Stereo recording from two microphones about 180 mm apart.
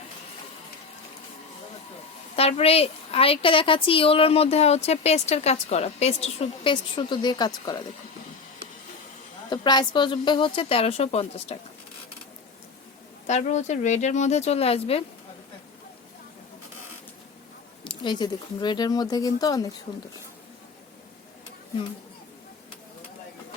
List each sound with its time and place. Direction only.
2.3 s a woman's voice: 35° left (ahead or behind)
9.5 s a woman's voice: 25° left (ahead or behind)
13.2 s a woman's voice: 40° left (ahead or behind)
17.8 s speech: 25° left (ahead or behind)